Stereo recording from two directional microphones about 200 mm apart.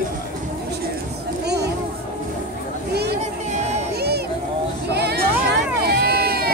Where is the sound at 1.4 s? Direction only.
55° right (ahead or behind).